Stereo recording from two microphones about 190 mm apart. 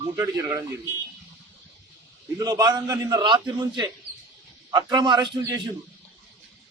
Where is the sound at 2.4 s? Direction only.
20° right (ahead or behind).